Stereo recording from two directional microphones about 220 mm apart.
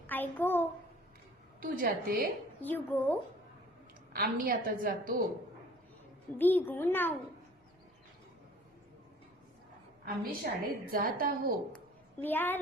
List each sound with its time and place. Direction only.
0.1 s a sound: 10° left (ahead or behind)
1.6 s a woman's voice: 40° right (ahead or behind)
2.6 s a child's voice: 10° left (ahead or behind)
4.1 s a woman's voice: 40° right (ahead or behind)
6.4 s a child's voice: 10° left (ahead or behind)
10.4 s a woman's voice: 40° right (ahead or behind)
12.2 s a child's voice: 10° left (ahead or behind)